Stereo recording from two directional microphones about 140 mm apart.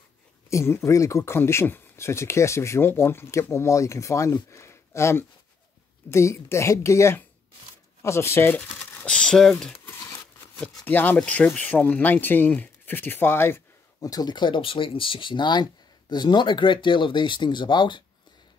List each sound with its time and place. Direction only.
0.5 s speech: 20° left (ahead or behind); by 9.8 s 5° left (ahead or behind)
9.8 s a sound: 15° left (ahead or behind)
10.9 s speech: 10° left (ahead or behind); by 18.0 s 35° left (ahead or behind)